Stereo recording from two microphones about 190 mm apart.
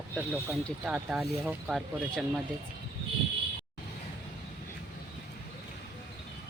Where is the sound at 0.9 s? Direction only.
5° right (ahead or behind).